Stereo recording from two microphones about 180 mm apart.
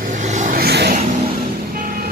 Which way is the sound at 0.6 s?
65° right (ahead or behind).